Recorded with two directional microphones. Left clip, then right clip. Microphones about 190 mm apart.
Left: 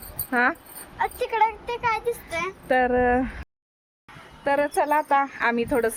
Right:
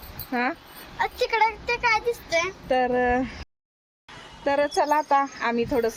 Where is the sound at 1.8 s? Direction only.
50° left (ahead or behind).